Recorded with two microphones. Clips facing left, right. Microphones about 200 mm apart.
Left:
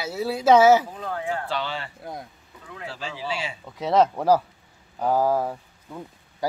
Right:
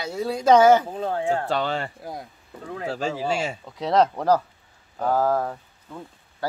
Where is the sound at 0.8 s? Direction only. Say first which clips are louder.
Right 5 dB; 30° right (ahead or behind).